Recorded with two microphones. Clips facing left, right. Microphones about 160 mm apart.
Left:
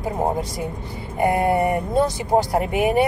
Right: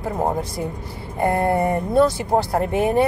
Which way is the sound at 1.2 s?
15° left (ahead or behind).